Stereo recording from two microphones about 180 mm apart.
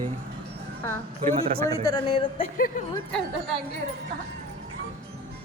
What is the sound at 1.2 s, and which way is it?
Speech, 40° right (ahead or behind).